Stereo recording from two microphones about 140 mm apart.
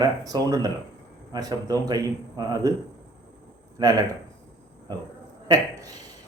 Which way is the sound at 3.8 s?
25° right (ahead or behind).